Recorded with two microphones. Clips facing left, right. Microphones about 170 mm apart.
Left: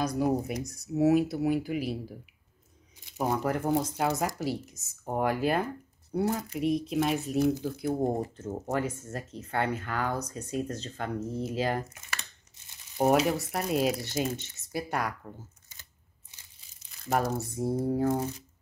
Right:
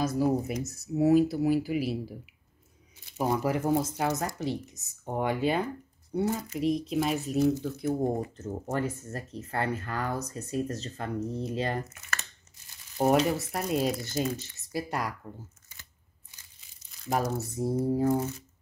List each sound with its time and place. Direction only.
0.0 s speech: 5° right (ahead or behind)
3.3 s speech: 5° right (ahead or behind)
7.9 s speech: 20° left (ahead or behind)
8.5 s speech: centre (ahead or behind)
12.6 s crumpling: 20° left (ahead or behind)
13.0 s speech: 5° left (ahead or behind)
17.1 s speech: centre (ahead or behind)